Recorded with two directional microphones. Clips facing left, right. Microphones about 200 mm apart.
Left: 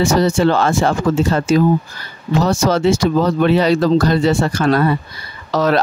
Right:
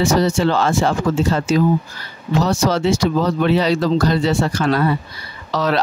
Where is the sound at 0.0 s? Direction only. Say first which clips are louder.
Left 2 dB; 50° left (ahead or behind).